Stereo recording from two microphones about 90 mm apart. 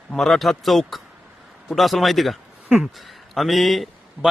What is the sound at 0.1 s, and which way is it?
A man's voice, centre (ahead or behind).